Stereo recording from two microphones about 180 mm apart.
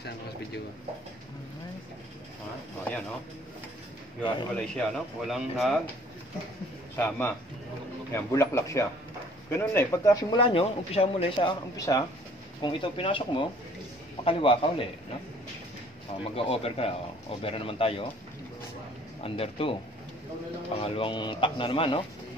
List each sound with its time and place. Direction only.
4.2 s speech: 25° left (ahead or behind)
4.6 s a man's voice: centre (ahead or behind)
7.0 s speech: 10° left (ahead or behind)
10.4 s speech: 30° left (ahead or behind)
12.6 s a man's voice: 30° left (ahead or behind)
16.3 s a man's voice: 30° left (ahead or behind)
19.2 s a man's voice: 30° left (ahead or behind)
20.8 s speech: 30° left (ahead or behind)